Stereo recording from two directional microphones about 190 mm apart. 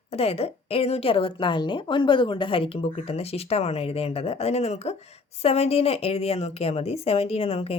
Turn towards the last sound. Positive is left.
turn(degrees=30)  # may be behind; listen again after turning